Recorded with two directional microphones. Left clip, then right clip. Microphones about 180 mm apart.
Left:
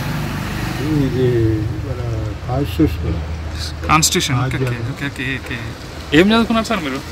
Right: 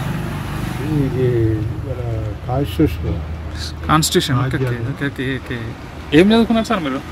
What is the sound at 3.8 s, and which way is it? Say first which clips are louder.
Speech: left 1 dB; 25° right (ahead or behind).